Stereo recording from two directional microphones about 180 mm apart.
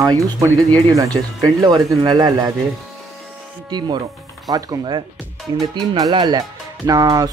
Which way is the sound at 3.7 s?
25° right (ahead or behind).